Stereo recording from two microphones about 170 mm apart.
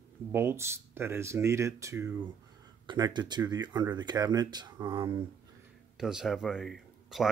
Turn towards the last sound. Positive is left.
turn(degrees=0)  # may be behind; listen again after turning